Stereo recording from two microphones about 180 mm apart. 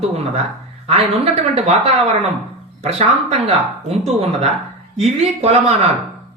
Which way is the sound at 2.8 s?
35° right (ahead or behind).